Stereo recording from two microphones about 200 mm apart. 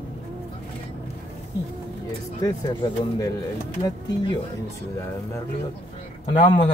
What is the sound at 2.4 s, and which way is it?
Speech, 20° left (ahead or behind).